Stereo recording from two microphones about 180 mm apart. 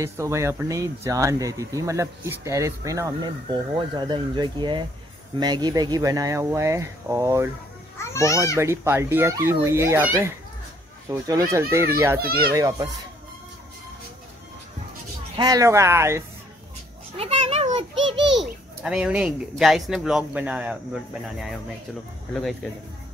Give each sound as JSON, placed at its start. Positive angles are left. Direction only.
{"t": 0.0, "sound": "speech", "side_deg": -15}
{"t": 8.0, "sound": "a child's voice", "side_deg": 15}
{"t": 8.5, "sound": "speech", "side_deg": -15}
{"t": 12.2, "sound": "a child's voice", "side_deg": -60}
{"t": 12.5, "sound": "speech", "side_deg": -20}
{"t": 15.3, "sound": "speech", "side_deg": -20}
{"t": 17.2, "sound": "a sound", "side_deg": -35}
{"t": 17.9, "sound": "a sound", "side_deg": -85}
{"t": 18.8, "sound": "speech", "side_deg": -5}